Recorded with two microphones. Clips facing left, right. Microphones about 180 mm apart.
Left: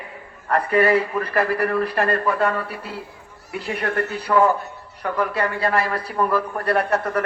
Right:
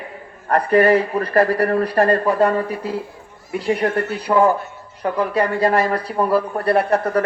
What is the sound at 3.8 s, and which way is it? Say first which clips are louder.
A woman's voice: right 4 dB; 20° right (ahead or behind).